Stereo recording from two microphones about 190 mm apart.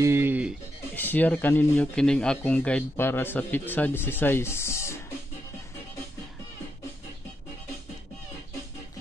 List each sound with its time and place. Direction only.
0.0 s music: 10° right (ahead or behind)
0.9 s speech: 10° left (ahead or behind)